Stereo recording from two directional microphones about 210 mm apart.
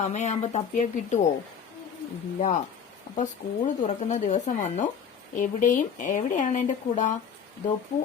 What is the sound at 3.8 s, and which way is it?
A woman's voice, 35° left (ahead or behind).